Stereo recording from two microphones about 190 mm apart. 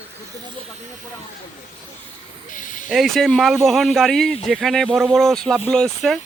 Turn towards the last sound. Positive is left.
turn(degrees=5)  # may be behind; listen again after turning